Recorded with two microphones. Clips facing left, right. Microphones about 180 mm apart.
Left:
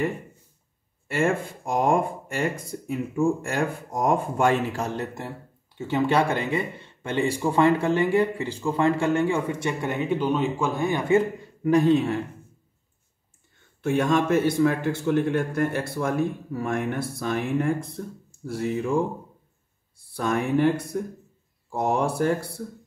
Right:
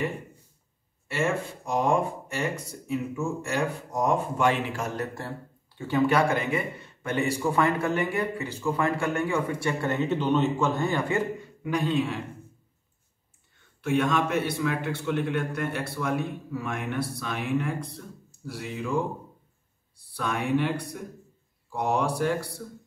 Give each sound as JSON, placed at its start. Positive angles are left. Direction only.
{"t": 1.0, "sound": "speech", "side_deg": 50}
{"t": 4.9, "sound": "speech", "side_deg": 20}
{"t": 11.6, "sound": "speech", "side_deg": 40}
{"t": 13.8, "sound": "a man's voice", "side_deg": 40}
{"t": 20.2, "sound": "a man's voice", "side_deg": 40}